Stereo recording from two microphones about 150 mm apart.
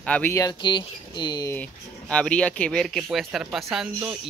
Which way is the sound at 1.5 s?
10° left (ahead or behind).